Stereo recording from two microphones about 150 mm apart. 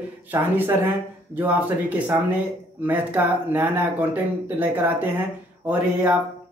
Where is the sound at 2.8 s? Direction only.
10° right (ahead or behind).